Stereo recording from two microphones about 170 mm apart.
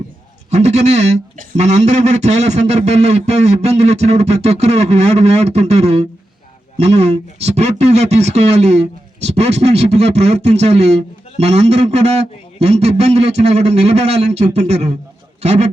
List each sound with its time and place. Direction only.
0.5 s speech: 40° right (ahead or behind)